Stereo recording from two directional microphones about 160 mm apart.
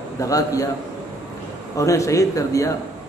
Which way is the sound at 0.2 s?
20° left (ahead or behind).